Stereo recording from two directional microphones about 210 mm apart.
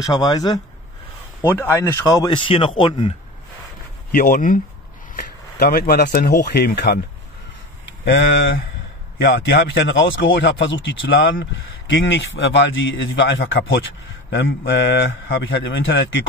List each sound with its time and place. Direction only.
0.0 s speech: 20° left (ahead or behind)
4.1 s speech: 40° left (ahead or behind)
8.0 s speech: 60° left (ahead or behind)